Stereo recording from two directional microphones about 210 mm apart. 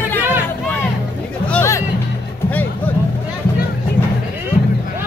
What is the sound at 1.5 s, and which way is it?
Music, 15° left (ahead or behind).